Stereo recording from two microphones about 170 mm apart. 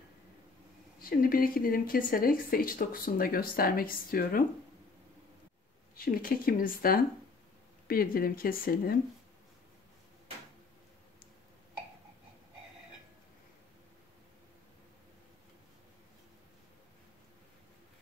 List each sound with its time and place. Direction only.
0.9 s speech: 55° left (ahead or behind)
5.9 s speech: 55° left (ahead or behind)